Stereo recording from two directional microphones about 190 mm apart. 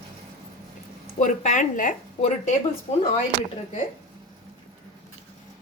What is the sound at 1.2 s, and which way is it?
Speech, 40° left (ahead or behind).